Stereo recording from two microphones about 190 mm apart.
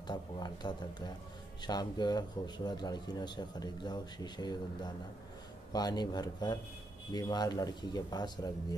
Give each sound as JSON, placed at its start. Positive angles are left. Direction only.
{"t": 0.0, "sound": "speech", "side_deg": 25}
{"t": 5.7, "sound": "speech", "side_deg": 20}